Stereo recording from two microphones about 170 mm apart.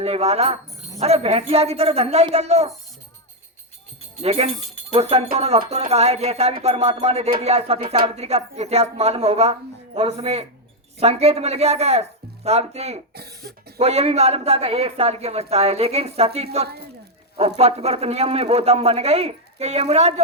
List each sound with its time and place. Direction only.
0.0 s speech: 35° right (ahead or behind)
4.2 s speech: 35° right (ahead or behind)
13.1 s cough: 70° right (ahead or behind)
13.7 s speech: 35° right (ahead or behind)
16.6 s speech: 70° right (ahead or behind)
17.6 s speech: 35° right (ahead or behind)